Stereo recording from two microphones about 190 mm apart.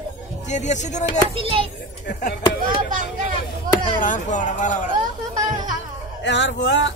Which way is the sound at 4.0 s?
40° left (ahead or behind).